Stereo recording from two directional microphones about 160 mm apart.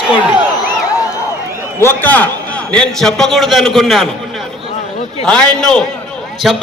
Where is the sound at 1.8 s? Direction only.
10° left (ahead or behind).